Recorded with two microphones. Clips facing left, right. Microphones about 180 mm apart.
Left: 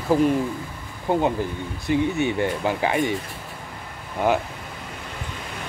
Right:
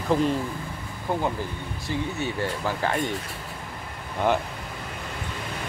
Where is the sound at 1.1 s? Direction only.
20° left (ahead or behind).